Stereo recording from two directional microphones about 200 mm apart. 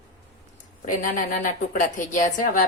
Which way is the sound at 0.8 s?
40° left (ahead or behind).